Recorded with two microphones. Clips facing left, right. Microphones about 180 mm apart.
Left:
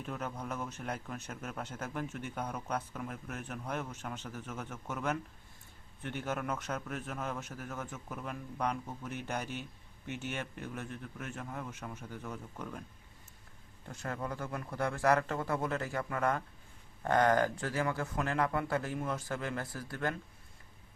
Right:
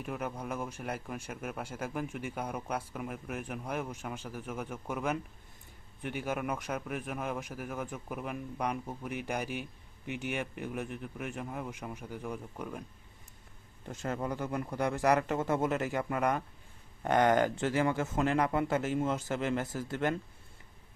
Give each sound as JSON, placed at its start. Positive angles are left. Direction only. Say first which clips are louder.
{"t": 0.0, "sound": "speech", "louder": "right 2 dB", "side_deg": -10}
{"t": 13.8, "sound": "speech", "louder": "right 4 dB", "side_deg": -20}